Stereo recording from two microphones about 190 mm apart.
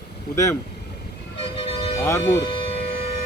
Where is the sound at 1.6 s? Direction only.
30° left (ahead or behind).